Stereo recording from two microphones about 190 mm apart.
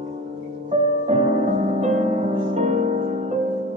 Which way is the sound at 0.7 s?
40° right (ahead or behind).